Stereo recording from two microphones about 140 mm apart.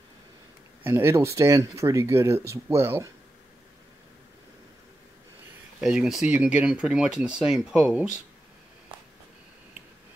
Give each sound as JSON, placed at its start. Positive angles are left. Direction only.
{"t": 0.8, "sound": "speech", "side_deg": -20}
{"t": 5.8, "sound": "speech", "side_deg": -5}